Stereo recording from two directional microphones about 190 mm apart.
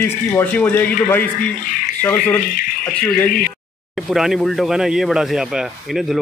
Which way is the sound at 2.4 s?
45° left (ahead or behind).